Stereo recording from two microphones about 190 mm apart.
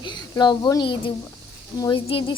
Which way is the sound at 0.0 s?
20° left (ahead or behind).